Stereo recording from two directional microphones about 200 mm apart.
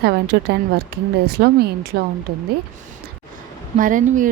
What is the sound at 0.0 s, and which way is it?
Speech, 55° right (ahead or behind).